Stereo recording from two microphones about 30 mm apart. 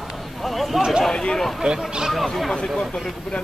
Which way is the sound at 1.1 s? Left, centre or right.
Left.